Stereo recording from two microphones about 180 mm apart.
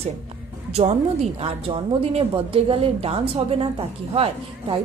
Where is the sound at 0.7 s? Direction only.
35° right (ahead or behind).